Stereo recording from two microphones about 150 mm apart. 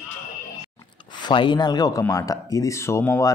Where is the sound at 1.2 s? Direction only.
30° left (ahead or behind).